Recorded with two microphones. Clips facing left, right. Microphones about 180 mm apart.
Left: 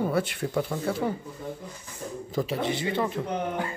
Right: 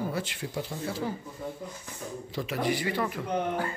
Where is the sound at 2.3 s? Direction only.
45° left (ahead or behind).